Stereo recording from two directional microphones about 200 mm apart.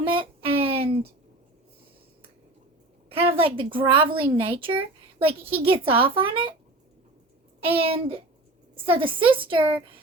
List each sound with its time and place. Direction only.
0.1 s a sound: 25° right (ahead or behind)
3.1 s a woman's voice: 30° right (ahead or behind)
7.6 s a woman's voice: 30° right (ahead or behind)